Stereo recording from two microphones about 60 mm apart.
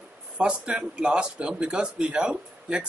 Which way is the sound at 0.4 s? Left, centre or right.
Centre.